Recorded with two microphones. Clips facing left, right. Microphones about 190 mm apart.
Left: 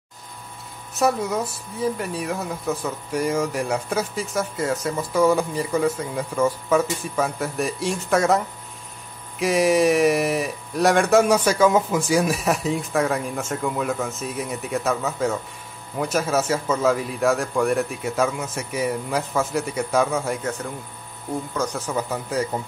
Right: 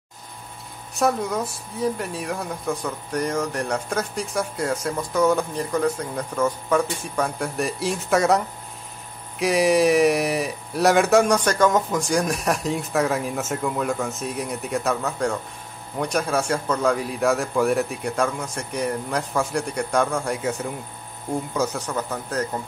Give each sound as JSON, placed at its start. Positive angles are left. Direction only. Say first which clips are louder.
{"t": 0.9, "sound": "speech", "louder": "left 1 dB", "side_deg": 5}
{"t": 21.7, "sound": "a man's voice", "louder": "left 2 dB", "side_deg": 5}